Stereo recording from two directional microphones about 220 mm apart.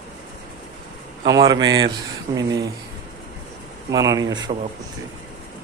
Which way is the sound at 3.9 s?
15° right (ahead or behind).